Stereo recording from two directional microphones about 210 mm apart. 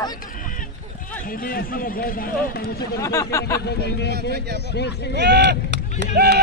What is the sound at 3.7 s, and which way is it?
Speech, 50° left (ahead or behind).